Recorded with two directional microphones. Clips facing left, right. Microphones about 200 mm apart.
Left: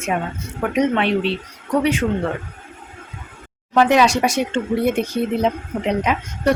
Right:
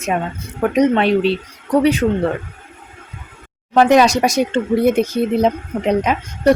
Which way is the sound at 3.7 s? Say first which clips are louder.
Right 3 dB; 40° right (ahead or behind).